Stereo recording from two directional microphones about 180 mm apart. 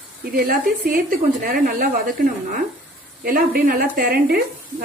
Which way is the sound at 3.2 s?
55° right (ahead or behind).